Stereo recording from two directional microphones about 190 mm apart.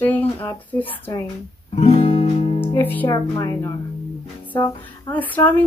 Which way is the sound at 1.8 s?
30° left (ahead or behind).